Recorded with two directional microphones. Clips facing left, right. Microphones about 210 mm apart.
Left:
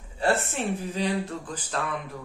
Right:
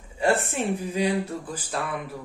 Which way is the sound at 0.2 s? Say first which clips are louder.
Right 2 dB; 15° right (ahead or behind).